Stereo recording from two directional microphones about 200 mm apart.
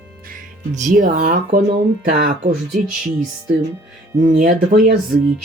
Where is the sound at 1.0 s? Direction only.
45° right (ahead or behind).